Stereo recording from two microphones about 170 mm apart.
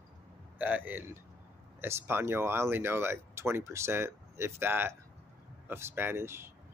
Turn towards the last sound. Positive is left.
turn(degrees=-15)  # may be behind; listen again after turning